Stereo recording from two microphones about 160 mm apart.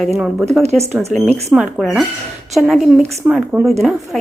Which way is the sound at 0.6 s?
40° right (ahead or behind).